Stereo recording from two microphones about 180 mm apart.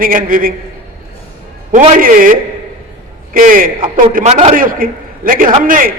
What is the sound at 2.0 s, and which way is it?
A man's voice, 50° right (ahead or behind).